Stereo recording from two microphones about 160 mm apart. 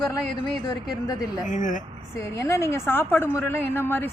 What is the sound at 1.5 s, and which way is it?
Speech, 55° left (ahead or behind).